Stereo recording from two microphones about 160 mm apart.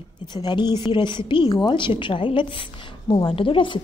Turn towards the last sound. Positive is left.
turn(degrees=30)  # may be behind; listen again after turning